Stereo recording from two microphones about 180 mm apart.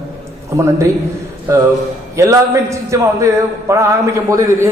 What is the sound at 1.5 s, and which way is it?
A man's voice, 15° right (ahead or behind).